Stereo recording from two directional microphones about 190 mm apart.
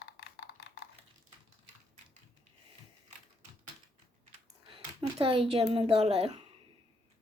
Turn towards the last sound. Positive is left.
turn(degrees=-30)  # may be behind; listen again after turning